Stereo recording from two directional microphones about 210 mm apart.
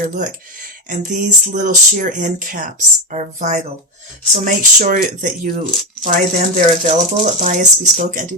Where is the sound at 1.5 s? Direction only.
40° right (ahead or behind).